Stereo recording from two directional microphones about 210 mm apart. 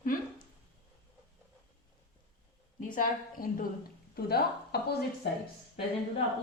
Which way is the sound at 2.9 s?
40° left (ahead or behind).